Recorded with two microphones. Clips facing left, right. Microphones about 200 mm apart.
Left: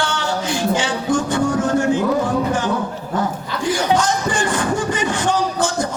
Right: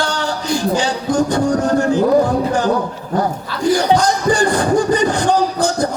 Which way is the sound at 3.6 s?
40° right (ahead or behind).